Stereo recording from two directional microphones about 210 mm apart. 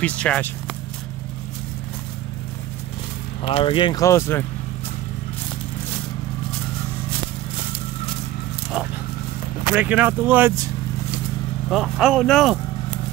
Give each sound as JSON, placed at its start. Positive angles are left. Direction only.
{"t": 0.0, "sound": "speech", "side_deg": 5}
{"t": 3.4, "sound": "speech", "side_deg": 25}
{"t": 9.8, "sound": "speech", "side_deg": -10}
{"t": 11.7, "sound": "speech", "side_deg": -5}